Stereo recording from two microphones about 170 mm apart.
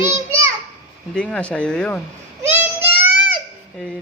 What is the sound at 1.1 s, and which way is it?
Speech, 5° left (ahead or behind).